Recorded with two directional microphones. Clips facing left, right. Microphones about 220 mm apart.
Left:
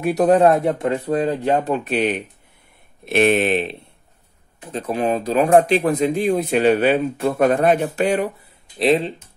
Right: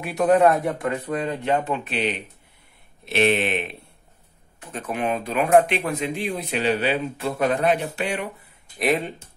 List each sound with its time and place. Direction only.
0.0 s speech: 35° left (ahead or behind)
4.7 s speech: 30° left (ahead or behind)
5.9 s speech: 45° left (ahead or behind)
8.7 s speech: 30° left (ahead or behind)